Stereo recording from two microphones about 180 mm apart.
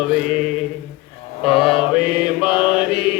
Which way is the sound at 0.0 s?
Centre (ahead or behind).